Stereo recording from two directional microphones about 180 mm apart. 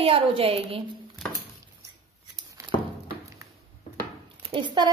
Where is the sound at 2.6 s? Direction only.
15° right (ahead or behind).